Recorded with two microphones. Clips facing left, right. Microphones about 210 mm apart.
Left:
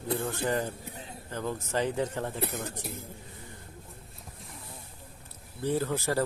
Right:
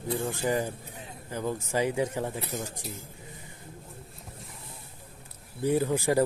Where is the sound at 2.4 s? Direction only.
60° left (ahead or behind).